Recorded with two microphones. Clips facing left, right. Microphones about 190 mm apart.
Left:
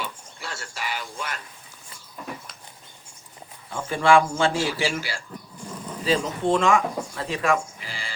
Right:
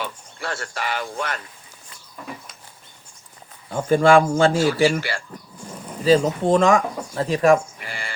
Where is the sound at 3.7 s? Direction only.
45° right (ahead or behind).